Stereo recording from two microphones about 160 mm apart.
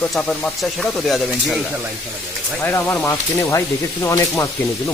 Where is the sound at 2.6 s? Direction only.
10° left (ahead or behind).